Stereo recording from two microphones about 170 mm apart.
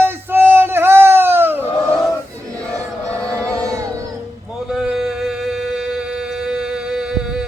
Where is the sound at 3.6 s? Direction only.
20° right (ahead or behind).